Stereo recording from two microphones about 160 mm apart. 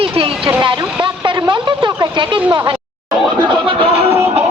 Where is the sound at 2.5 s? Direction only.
30° right (ahead or behind).